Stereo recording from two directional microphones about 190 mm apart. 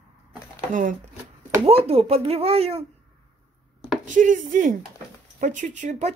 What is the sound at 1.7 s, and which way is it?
Speech, 30° right (ahead or behind).